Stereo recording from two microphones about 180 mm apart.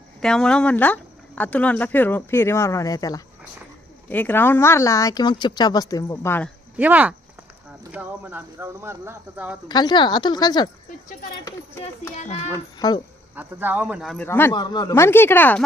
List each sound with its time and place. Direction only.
0.2 s speech: 5° left (ahead or behind); by 3.2 s 20° left (ahead or behind)
4.1 s speech: 10° left (ahead or behind)
6.7 s speech: 10° right (ahead or behind)
9.6 s speech: 25° left (ahead or behind)
12.1 s a child's voice: 40° left (ahead or behind)
12.8 s speech: 20° left (ahead or behind)
13.3 s speech: 10° right (ahead or behind)
14.3 s speech: 10° left (ahead or behind)
14.5 s speech: 25° left (ahead or behind)